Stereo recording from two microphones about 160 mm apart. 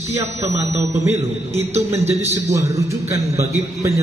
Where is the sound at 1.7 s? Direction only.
40° right (ahead or behind).